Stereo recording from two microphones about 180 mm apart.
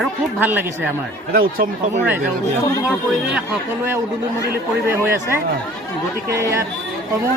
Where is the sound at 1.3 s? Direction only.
55° right (ahead or behind).